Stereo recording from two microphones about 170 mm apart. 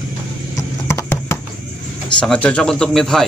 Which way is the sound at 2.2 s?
5° left (ahead or behind).